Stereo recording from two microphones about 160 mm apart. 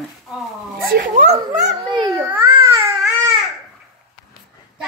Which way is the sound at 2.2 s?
15° right (ahead or behind).